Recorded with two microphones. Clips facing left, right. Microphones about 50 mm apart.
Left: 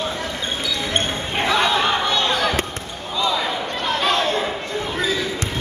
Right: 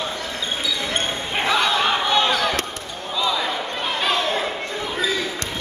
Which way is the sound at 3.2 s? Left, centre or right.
Centre.